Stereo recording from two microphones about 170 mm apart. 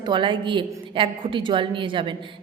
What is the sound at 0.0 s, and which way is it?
A woman's voice, 30° right (ahead or behind).